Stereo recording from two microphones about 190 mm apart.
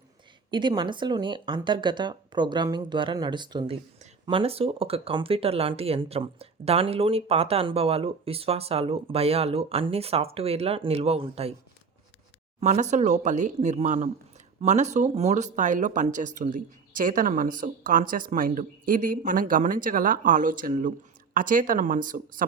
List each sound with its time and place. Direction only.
0.5 s speech: 25° right (ahead or behind)
12.5 s speech: 35° right (ahead or behind)